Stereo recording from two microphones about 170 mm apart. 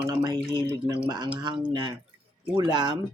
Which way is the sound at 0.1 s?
25° right (ahead or behind).